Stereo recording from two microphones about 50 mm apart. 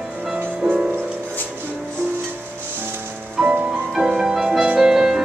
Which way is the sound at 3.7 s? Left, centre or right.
Centre.